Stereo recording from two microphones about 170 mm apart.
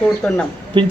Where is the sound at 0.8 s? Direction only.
30° right (ahead or behind).